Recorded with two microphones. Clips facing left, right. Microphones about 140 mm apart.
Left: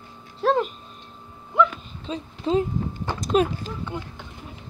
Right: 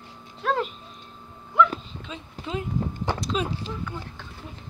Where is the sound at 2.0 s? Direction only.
35° left (ahead or behind).